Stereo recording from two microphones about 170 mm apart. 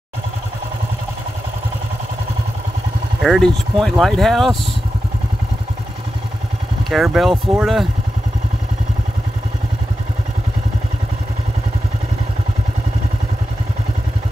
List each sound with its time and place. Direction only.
3.2 s speech: centre (ahead or behind)
6.9 s speech: centre (ahead or behind)